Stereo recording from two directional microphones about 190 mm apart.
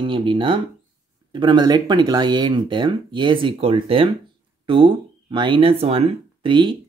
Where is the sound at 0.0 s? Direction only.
25° right (ahead or behind).